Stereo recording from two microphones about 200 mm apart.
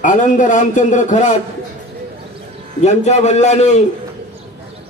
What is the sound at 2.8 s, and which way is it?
A man's voice, 35° left (ahead or behind).